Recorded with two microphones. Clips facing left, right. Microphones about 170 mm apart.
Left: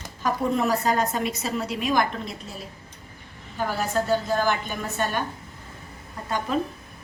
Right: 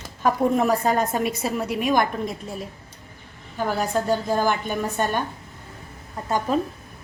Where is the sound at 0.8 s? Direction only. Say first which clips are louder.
Right 2 dB; 50° right (ahead or behind).